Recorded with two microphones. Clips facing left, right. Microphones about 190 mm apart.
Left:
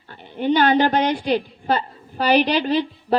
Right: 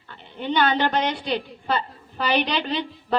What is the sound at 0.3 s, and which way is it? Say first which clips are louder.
A woman's voice: left 5 dB; 40° left (ahead or behind).